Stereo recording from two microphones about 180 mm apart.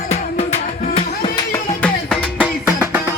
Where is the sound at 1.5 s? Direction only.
5° left (ahead or behind).